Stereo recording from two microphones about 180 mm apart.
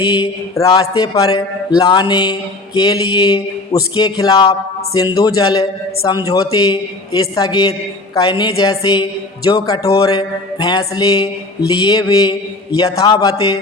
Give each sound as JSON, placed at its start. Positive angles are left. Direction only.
{"t": 0.0, "sound": "a man's voice", "side_deg": 25}